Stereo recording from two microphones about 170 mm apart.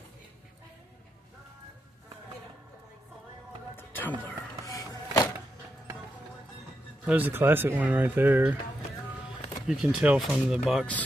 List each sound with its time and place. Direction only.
3.7 s music: 10° left (ahead or behind)
4.2 s a sound: 15° left (ahead or behind)
7.1 s speech: 10° right (ahead or behind)
9.7 s speech: 5° right (ahead or behind)